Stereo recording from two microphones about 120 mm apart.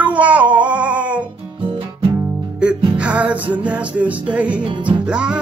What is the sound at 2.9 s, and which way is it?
Music, 10° right (ahead or behind).